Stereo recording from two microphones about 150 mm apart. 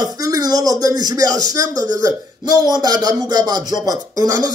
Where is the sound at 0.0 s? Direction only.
25° right (ahead or behind).